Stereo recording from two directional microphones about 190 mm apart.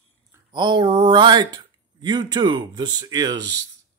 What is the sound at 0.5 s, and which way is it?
Speech, 25° right (ahead or behind).